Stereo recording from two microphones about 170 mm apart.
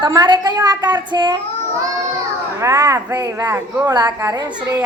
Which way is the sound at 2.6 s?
15° right (ahead or behind).